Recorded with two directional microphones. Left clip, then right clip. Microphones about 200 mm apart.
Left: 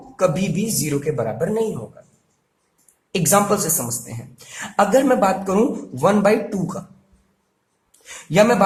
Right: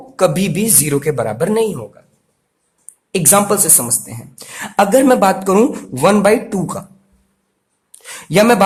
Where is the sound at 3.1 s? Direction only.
25° right (ahead or behind).